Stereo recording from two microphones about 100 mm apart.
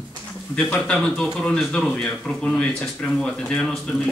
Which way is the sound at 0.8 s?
10° left (ahead or behind).